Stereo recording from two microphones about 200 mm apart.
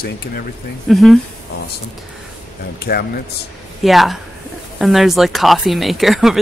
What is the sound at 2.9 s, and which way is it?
Speech, 50° left (ahead or behind).